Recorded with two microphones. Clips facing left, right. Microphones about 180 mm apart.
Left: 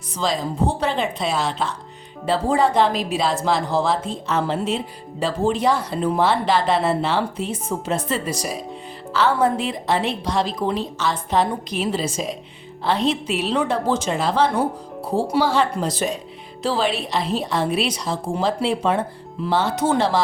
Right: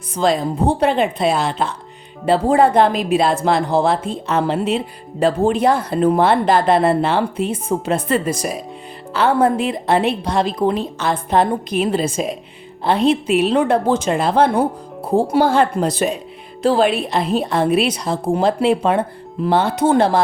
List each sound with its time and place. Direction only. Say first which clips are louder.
0.2 s speech: right 5 dB; 60° right (ahead or behind)